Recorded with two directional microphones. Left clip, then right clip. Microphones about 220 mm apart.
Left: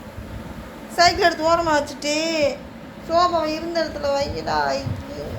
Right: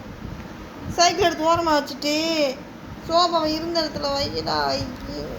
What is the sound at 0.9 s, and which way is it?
A woman's voice, 5° right (ahead or behind).